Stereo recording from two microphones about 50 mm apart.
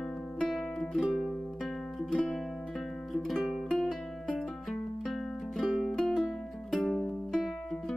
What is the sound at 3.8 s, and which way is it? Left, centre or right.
Music, left.